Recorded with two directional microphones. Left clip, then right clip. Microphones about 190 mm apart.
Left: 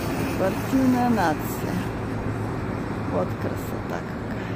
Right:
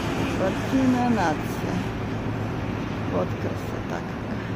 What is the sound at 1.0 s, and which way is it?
Speech, 5° left (ahead or behind).